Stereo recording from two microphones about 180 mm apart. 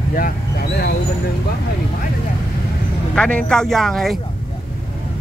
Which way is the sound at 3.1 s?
5° left (ahead or behind).